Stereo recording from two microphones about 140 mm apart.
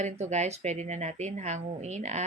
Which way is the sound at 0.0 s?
55° right (ahead or behind).